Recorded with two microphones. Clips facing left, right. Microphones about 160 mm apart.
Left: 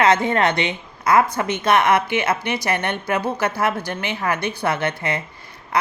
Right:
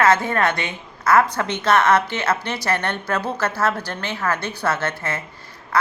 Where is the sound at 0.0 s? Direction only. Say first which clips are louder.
Left 1 dB; 20° left (ahead or behind).